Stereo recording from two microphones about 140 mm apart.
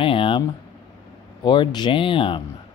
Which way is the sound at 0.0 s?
40° left (ahead or behind).